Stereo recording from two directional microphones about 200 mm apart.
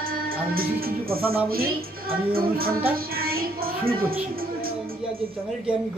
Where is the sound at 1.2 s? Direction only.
10° right (ahead or behind).